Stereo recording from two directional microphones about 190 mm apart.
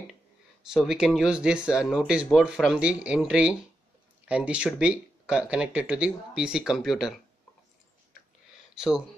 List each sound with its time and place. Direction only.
0.7 s speech: centre (ahead or behind)
8.7 s speech: 5° right (ahead or behind)